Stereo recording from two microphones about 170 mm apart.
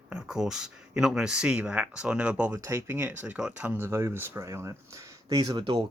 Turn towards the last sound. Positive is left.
turn(degrees=-25)  # may be behind; listen again after turning